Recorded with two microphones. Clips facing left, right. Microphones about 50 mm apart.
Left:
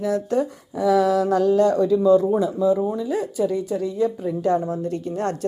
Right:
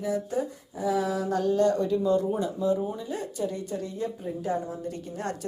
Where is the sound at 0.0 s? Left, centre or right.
Left.